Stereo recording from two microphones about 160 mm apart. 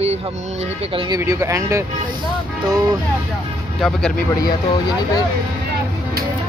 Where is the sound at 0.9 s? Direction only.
25° right (ahead or behind).